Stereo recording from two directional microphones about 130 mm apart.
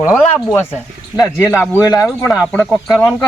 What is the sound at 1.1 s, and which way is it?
Speech, 20° left (ahead or behind).